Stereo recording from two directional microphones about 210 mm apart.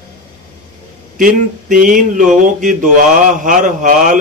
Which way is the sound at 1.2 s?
40° right (ahead or behind).